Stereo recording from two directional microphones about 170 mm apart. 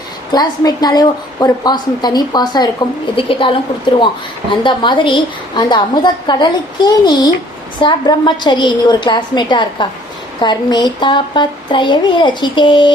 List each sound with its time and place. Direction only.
0.3 s a woman's voice: 25° left (ahead or behind)